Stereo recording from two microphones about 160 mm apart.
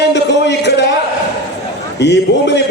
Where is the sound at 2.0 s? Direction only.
90° left.